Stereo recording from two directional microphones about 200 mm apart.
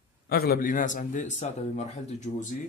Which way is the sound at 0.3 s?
50° left (ahead or behind).